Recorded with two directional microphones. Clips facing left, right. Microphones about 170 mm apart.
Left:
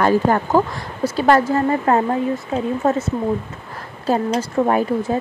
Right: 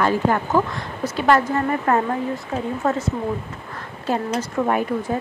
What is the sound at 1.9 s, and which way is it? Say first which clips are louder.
A woman's voice: left 3 dB; 25° left (ahead or behind).